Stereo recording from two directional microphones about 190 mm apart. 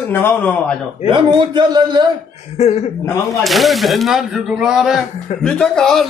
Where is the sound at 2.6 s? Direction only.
35° left (ahead or behind).